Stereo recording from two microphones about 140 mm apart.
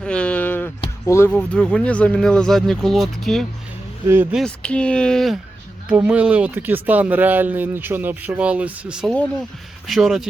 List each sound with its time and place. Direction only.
0.0 s a sound: 10° left (ahead or behind)
1.0 s speech: 20° left (ahead or behind)
1.3 s speech: 5° left (ahead or behind)
4.1 s speech: 15° right (ahead or behind)
4.4 s speech: 5° left (ahead or behind)
5.9 s speech: 10° right (ahead or behind)